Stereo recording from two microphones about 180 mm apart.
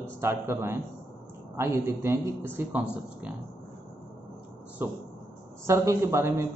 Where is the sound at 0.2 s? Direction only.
15° right (ahead or behind).